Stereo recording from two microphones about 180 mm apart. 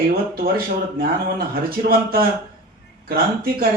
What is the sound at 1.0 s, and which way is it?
Speech, 55° right (ahead or behind).